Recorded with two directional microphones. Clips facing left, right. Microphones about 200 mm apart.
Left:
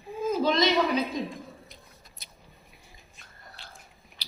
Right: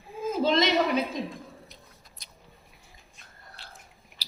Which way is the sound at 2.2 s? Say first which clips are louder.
Left 1 dB; 5° left (ahead or behind).